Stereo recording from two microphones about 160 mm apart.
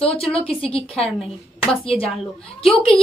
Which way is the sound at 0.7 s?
35° left (ahead or behind).